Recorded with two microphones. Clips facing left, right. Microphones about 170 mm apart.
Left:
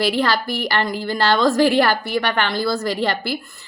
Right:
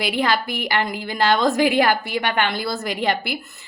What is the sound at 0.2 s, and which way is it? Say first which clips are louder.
A woman's voice: left 1 dB; 20° right (ahead or behind).